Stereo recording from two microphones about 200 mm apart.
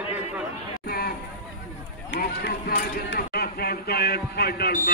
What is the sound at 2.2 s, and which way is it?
A man's voice, 50° left (ahead or behind).